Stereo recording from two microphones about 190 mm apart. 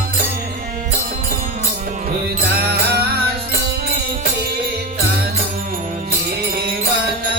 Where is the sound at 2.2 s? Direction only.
55° right (ahead or behind).